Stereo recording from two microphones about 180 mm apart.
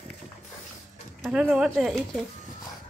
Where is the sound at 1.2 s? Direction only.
5° right (ahead or behind).